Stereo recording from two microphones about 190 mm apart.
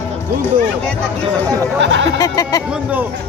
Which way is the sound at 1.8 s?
75° right (ahead or behind).